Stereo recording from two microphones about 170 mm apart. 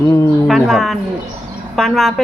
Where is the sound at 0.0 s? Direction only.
20° left (ahead or behind).